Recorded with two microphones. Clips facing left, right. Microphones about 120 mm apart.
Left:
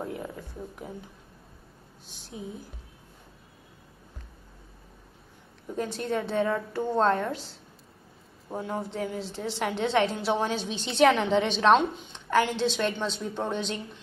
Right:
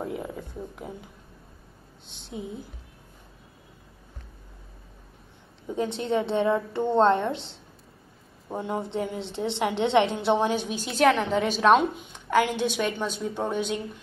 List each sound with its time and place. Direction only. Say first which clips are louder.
5.8 s a woman's voice: right 3 dB; 20° right (ahead or behind)
8.5 s a woman's voice: right 2 dB; 15° right (ahead or behind)